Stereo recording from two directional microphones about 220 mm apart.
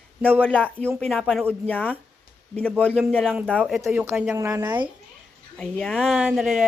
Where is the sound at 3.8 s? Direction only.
10° right (ahead or behind).